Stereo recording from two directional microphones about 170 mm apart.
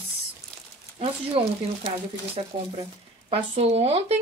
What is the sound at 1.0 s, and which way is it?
Speech, 35° right (ahead or behind).